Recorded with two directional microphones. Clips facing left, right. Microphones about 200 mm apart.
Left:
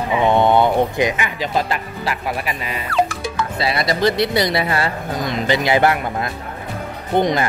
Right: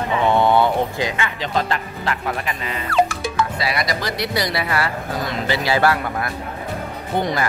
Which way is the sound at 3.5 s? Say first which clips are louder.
Left 3 dB; 25° left (ahead or behind).